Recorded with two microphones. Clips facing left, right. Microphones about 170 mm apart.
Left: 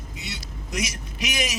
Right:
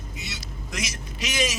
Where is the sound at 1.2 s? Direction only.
15° left (ahead or behind).